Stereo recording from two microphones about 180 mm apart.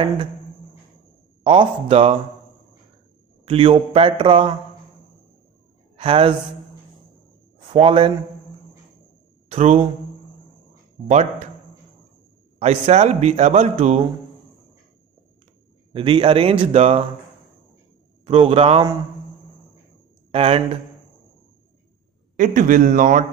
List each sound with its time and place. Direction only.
1.4 s a man's voice: 30° right (ahead or behind)
3.4 s a man's voice: 30° right (ahead or behind)
5.9 s speech: 30° right (ahead or behind)
7.7 s a man's voice: 30° right (ahead or behind)
9.5 s speech: 35° right (ahead or behind)
11.1 s a man's voice: 40° right (ahead or behind)
12.5 s a man's voice: 35° right (ahead or behind)
15.9 s a man's voice: 30° right (ahead or behind)
18.2 s a man's voice: 30° right (ahead or behind)
20.2 s speech: 35° right (ahead or behind)
22.4 s speech: 50° right (ahead or behind)